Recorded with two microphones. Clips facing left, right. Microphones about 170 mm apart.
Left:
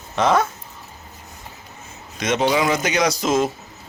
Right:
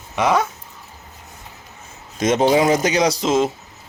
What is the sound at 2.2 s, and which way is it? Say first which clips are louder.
A man's voice: right 4 dB; 45° right (ahead or behind).